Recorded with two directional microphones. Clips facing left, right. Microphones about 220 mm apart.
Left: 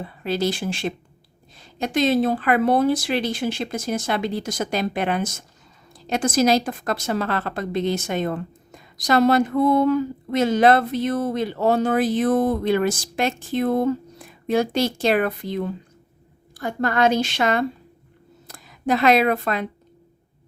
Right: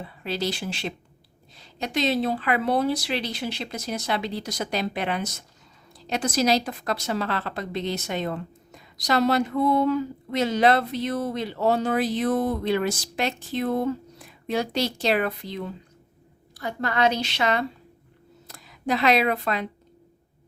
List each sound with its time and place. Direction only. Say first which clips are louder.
0.0 s a woman's voice: left 5 dB; 50° left (ahead or behind)